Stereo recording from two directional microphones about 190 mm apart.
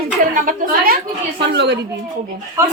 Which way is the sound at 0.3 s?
45° right (ahead or behind).